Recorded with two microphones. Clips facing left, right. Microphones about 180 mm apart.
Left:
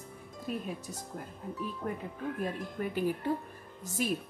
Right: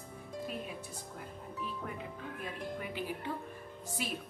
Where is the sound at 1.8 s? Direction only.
40° left (ahead or behind).